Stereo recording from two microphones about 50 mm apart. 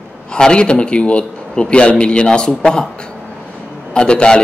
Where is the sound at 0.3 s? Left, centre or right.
Centre.